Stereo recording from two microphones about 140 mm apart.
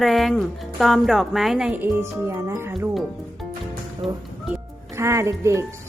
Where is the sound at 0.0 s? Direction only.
Centre (ahead or behind).